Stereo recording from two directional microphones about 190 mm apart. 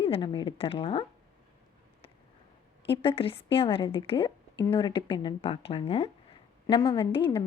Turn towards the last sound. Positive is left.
turn(degrees=25)  # may be behind; listen again after turning